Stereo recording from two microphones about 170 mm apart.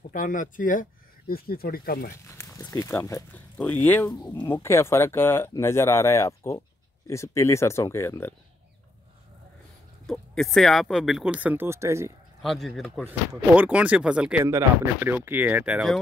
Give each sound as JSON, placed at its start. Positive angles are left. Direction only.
{"t": 0.1, "sound": "speech", "side_deg": 50}
{"t": 2.2, "sound": "speech", "side_deg": 15}
{"t": 4.1, "sound": "speech", "side_deg": 25}
{"t": 4.5, "sound": "speech", "side_deg": 15}
{"t": 10.0, "sound": "speech", "side_deg": 0}
{"t": 12.4, "sound": "speech", "side_deg": 0}